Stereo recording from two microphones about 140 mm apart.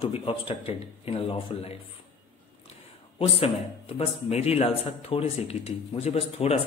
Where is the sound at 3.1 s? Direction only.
45° left (ahead or behind).